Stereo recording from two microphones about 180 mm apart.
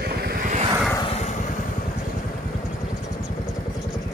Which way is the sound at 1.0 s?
35° left (ahead or behind).